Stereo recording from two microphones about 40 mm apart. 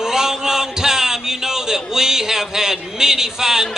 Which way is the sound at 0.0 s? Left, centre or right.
Centre.